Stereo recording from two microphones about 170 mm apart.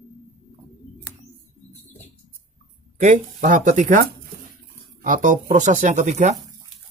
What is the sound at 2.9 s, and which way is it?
Speech, 45° right (ahead or behind).